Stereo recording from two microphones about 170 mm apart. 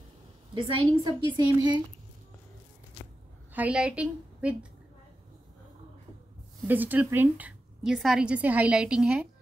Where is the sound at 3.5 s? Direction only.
5° right (ahead or behind).